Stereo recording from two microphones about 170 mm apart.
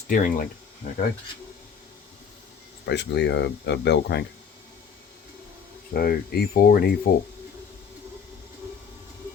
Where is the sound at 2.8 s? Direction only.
80° left.